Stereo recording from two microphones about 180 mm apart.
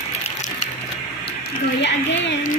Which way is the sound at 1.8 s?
80° left.